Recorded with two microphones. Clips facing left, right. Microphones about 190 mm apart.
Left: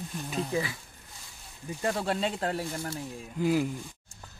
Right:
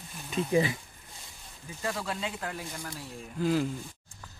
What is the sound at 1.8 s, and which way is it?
Speech, 30° left (ahead or behind).